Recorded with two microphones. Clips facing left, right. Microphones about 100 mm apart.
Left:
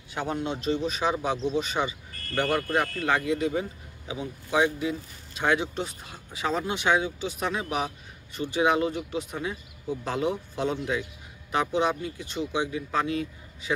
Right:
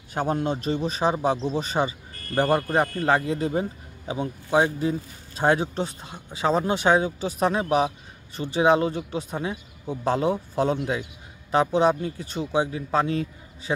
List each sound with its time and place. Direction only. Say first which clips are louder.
0.1 s speech: right 5 dB; 45° right (ahead or behind)